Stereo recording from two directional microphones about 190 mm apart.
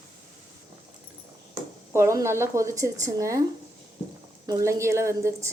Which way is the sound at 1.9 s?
15° right (ahead or behind).